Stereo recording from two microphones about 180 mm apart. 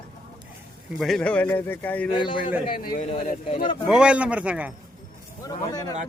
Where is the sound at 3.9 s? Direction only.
5° right (ahead or behind).